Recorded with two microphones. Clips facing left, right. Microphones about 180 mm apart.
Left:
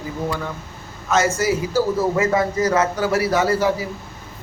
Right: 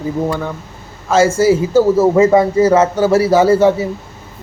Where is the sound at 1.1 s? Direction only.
30° right (ahead or behind).